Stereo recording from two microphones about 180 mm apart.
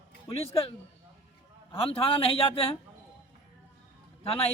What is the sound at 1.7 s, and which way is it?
Speech, 30° left (ahead or behind).